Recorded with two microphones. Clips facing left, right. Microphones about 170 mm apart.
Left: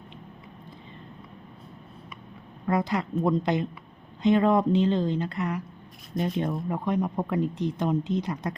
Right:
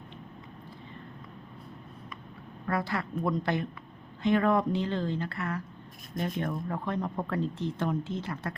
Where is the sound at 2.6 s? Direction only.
20° left (ahead or behind).